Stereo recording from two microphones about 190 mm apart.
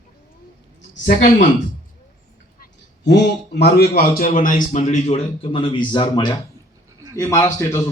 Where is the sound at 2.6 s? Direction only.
65° left (ahead or behind).